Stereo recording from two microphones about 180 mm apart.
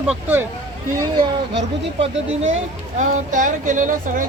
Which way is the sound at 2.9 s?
45° right (ahead or behind).